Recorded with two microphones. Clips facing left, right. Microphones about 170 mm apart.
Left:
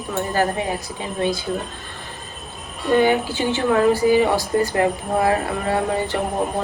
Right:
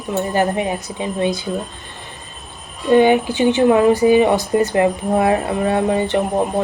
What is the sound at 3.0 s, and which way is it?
Speech, 20° right (ahead or behind).